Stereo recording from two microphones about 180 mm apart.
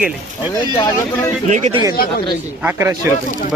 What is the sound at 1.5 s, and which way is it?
Speech, 40° right (ahead or behind).